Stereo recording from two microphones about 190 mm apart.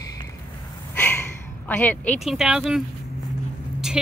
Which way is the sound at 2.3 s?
5° right (ahead or behind).